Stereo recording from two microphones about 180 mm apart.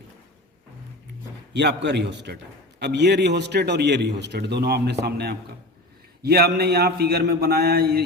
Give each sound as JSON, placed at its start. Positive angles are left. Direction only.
{"t": 1.5, "sound": "a man's voice", "side_deg": -75}